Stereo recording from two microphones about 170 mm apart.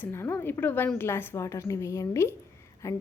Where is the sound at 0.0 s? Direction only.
15° left (ahead or behind).